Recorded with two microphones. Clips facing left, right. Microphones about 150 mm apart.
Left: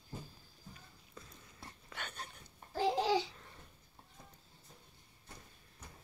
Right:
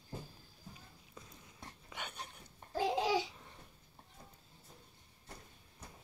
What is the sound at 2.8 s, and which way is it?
Babbling, 10° right (ahead or behind).